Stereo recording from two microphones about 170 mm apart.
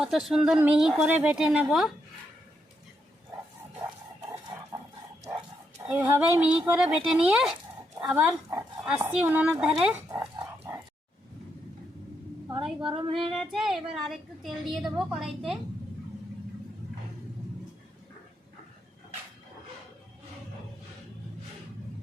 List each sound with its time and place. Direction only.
0.0 s a woman's voice: centre (ahead or behind)
5.9 s speech: 10° right (ahead or behind)
10.1 s speech: 20° right (ahead or behind)
12.8 s speech: 30° right (ahead or behind)
13.3 s a woman's voice: centre (ahead or behind)